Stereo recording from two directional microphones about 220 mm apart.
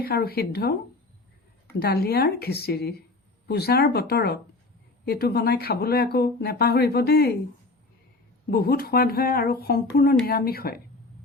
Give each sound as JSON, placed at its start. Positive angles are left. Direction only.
{"t": 0.0, "sound": "speech", "side_deg": 45}
{"t": 1.8, "sound": "speech", "side_deg": 45}
{"t": 8.4, "sound": "speech", "side_deg": 45}